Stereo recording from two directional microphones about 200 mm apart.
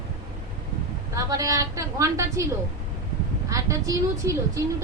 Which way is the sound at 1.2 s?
15° right (ahead or behind).